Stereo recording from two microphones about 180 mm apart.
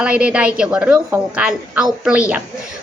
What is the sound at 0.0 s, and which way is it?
A woman's voice, 5° right (ahead or behind).